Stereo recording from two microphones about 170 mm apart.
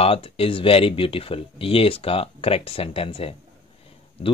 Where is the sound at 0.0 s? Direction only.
35° left (ahead or behind).